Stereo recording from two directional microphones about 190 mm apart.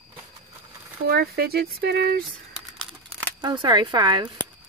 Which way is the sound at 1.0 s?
55° right (ahead or behind).